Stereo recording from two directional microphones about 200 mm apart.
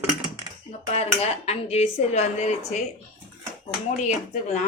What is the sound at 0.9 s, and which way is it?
Speech, 30° left (ahead or behind).